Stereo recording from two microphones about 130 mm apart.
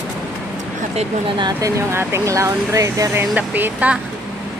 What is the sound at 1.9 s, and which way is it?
Speech, 20° right (ahead or behind).